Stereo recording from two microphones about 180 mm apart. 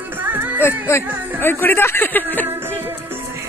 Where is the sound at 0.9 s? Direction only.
15° left (ahead or behind).